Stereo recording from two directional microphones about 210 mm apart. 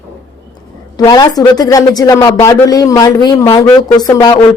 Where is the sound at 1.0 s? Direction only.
20° left (ahead or behind).